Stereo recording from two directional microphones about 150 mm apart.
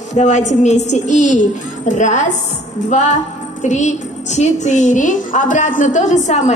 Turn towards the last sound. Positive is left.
turn(degrees=55)  # may be behind; listen again after turning